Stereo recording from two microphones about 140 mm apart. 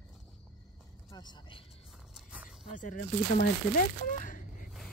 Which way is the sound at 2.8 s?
80° left.